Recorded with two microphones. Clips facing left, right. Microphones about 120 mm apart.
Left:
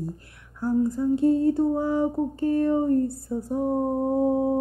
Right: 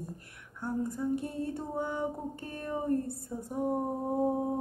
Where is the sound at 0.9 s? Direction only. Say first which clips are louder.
Left 12 dB; 25° left (ahead or behind).